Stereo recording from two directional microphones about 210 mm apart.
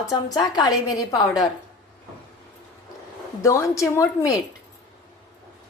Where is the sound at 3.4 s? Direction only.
15° left (ahead or behind).